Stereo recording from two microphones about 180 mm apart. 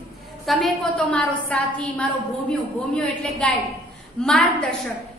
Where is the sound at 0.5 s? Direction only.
5° left (ahead or behind).